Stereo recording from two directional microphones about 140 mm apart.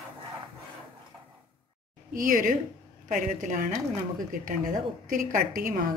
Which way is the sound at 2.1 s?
75° right (ahead or behind).